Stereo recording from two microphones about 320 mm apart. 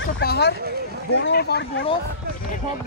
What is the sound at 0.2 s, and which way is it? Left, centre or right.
Speech, left.